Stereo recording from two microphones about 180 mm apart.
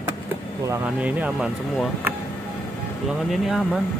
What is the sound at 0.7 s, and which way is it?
Speech, 10° right (ahead or behind).